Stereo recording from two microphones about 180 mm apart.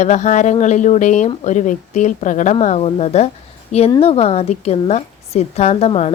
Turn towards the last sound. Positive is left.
turn(degrees=35)  # may be behind; listen again after turning